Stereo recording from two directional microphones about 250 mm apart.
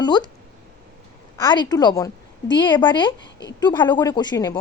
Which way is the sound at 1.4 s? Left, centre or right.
Centre.